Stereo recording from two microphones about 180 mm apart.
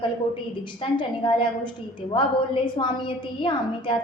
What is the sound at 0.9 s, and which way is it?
A woman's voice, 25° left (ahead or behind).